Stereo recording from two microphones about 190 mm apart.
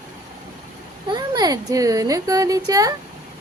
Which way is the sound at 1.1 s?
20° right (ahead or behind).